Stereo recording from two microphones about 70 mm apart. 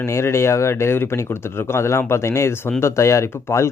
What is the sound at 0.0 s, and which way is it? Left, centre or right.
Speech, left.